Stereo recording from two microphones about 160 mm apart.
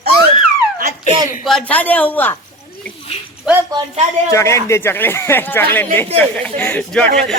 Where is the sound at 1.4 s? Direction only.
5° left (ahead or behind).